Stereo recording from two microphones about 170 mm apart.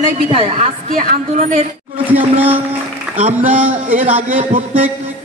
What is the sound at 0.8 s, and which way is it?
Speech, 55° right (ahead or behind).